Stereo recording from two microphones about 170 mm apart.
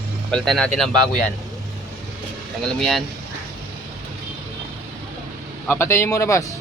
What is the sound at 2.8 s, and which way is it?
Speech, centre (ahead or behind).